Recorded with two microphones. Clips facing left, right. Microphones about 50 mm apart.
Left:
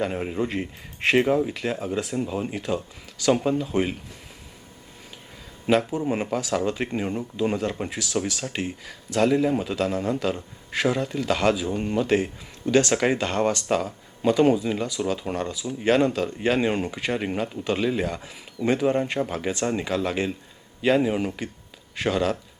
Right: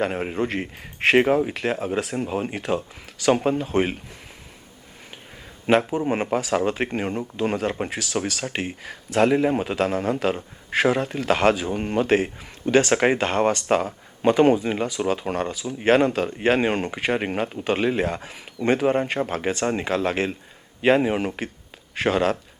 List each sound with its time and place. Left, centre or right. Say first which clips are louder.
0.0 s speech: right 2 dB; right
5.7 s a man's voice: right 2 dB; right
6.1 s speech: right 3 dB; right